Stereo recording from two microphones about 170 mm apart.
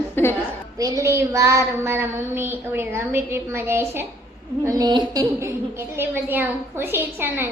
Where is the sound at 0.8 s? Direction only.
20° right (ahead or behind).